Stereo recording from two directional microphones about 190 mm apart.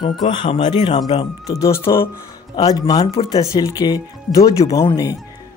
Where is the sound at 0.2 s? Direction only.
25° left (ahead or behind).